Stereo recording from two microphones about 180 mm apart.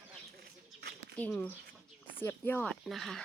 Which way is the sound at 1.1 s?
5° left (ahead or behind).